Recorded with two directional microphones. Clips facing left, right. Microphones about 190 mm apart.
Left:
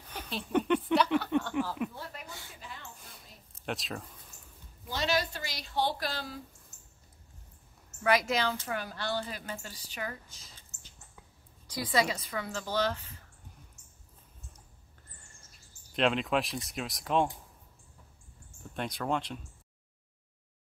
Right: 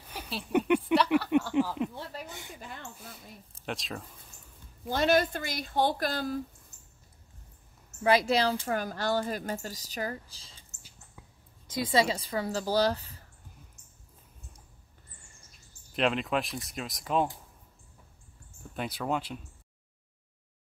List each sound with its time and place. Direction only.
0.1 s a sound: 5° right (ahead or behind)
1.5 s a sound: 20° right (ahead or behind)
2.6 s mouse: 50° right (ahead or behind)
3.0 s a sound: centre (ahead or behind)
3.6 s speech: centre (ahead or behind)
4.8 s a woman's voice: 50° right (ahead or behind)
8.0 s speech: 30° right (ahead or behind)
8.6 s a woman's voice: 45° right (ahead or behind)
10.7 s a sound: 20° right (ahead or behind)
11.6 s speech: 25° right (ahead or behind)
15.9 s speech: centre (ahead or behind)
18.7 s speech: 5° right (ahead or behind)